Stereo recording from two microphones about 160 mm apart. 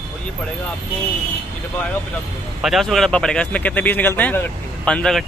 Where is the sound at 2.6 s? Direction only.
Centre (ahead or behind).